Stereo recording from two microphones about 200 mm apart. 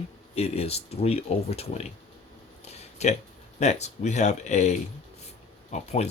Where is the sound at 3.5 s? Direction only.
35° left (ahead or behind).